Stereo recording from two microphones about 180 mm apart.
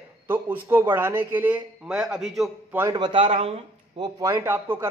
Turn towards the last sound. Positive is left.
turn(degrees=-10)  # may be behind; listen again after turning